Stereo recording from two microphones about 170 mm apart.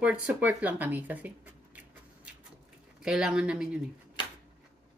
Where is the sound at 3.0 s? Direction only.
5° right (ahead or behind).